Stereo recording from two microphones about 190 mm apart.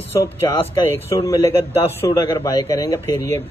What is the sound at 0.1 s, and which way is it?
A man's voice, 20° left (ahead or behind).